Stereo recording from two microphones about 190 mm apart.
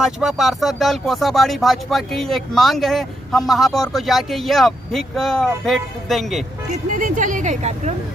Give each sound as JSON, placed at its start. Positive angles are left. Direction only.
{"t": 0.0, "sound": "speech", "side_deg": 0}
{"t": 6.7, "sound": "speech", "side_deg": -45}